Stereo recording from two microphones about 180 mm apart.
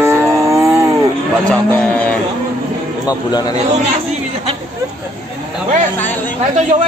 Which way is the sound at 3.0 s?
20° left (ahead or behind).